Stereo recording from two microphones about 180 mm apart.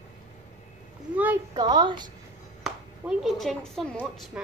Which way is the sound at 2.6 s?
Centre (ahead or behind).